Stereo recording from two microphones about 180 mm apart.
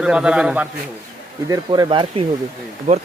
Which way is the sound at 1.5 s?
25° right (ahead or behind).